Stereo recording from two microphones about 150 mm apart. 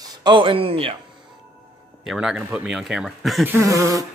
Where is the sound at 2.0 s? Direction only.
5° right (ahead or behind).